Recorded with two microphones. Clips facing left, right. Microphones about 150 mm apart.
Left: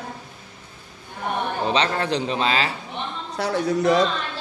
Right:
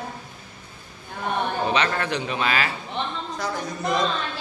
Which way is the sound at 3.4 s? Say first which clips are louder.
Left 9 dB; 75° left (ahead or behind).